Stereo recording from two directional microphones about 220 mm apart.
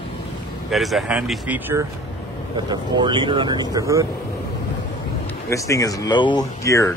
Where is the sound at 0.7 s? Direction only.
Centre (ahead or behind).